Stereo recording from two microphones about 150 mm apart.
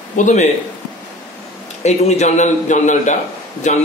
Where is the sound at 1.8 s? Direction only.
50° left (ahead or behind).